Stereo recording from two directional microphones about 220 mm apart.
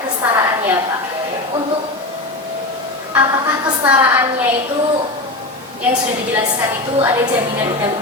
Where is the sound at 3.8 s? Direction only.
5° right (ahead or behind).